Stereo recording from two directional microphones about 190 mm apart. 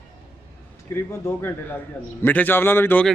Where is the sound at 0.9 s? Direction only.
15° left (ahead or behind).